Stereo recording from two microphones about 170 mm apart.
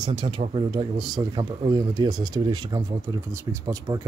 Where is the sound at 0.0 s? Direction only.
30° right (ahead or behind).